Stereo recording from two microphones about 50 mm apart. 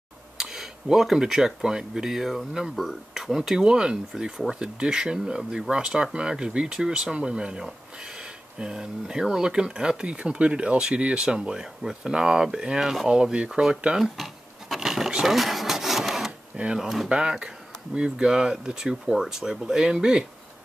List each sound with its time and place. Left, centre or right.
0.4 s speech: centre
13.9 s a sound: centre
16.7 s speech: centre
17.1 s speech: right